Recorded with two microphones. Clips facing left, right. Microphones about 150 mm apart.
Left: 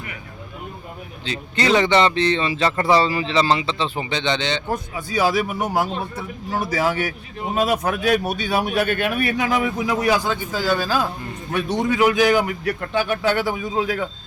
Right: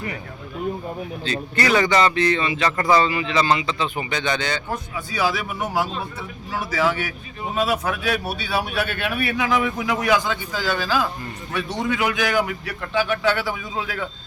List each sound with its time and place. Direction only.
1.2 s speech: 20° left (ahead or behind)
5.1 s speech: 40° left (ahead or behind)